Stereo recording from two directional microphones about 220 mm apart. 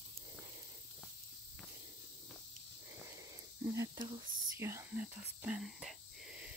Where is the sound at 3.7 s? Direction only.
20° right (ahead or behind).